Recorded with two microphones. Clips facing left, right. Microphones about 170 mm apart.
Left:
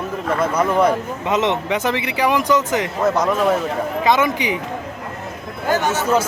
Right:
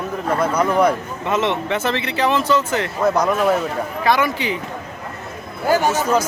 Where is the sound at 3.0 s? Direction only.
Centre (ahead or behind).